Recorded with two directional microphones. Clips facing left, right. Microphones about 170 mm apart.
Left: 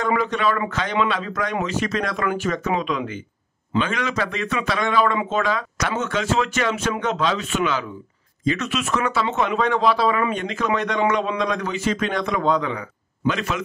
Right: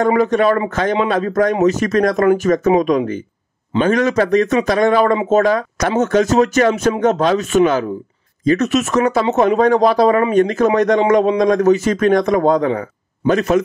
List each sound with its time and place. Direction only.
0.0 s speech: 45° right (ahead or behind)